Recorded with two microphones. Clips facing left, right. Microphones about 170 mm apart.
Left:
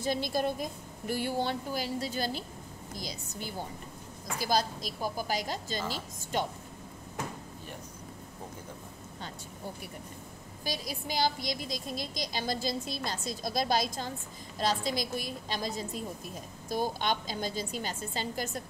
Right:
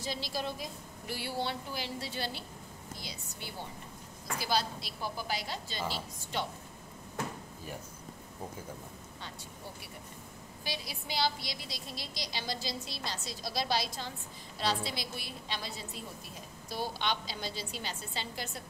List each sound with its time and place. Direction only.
0.0 s a woman's voice: 50° left (ahead or behind)
10.6 s a woman's voice: 45° left (ahead or behind)